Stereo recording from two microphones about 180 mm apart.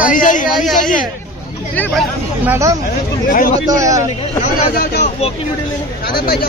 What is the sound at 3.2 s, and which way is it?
Speech, 50° left (ahead or behind).